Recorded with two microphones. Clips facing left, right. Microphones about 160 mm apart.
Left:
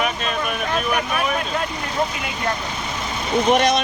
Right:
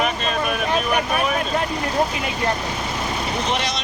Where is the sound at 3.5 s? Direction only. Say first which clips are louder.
Left 11 dB; 50° left (ahead or behind).